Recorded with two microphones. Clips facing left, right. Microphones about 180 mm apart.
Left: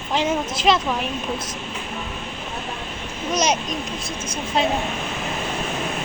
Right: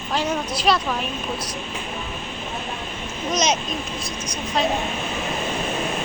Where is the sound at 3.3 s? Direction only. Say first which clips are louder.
Left 1 dB; 10° left (ahead or behind).